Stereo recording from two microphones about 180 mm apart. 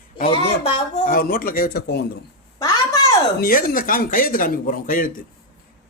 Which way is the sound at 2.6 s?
20° left (ahead or behind).